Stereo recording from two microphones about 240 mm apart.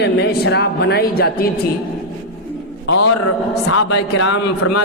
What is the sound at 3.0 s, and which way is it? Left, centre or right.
Speech, left.